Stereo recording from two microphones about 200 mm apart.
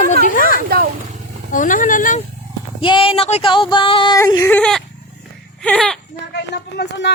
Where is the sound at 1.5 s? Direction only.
40° left (ahead or behind).